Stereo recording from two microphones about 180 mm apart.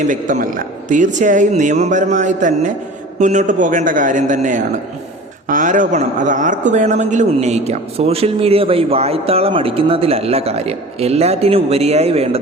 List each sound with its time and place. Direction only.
0.0 s a woman's voice: 45° right (ahead or behind)